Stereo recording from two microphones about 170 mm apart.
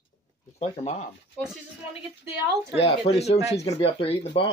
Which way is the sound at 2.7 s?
35° left (ahead or behind).